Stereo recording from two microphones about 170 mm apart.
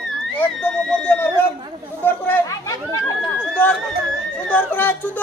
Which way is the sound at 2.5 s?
20° left (ahead or behind).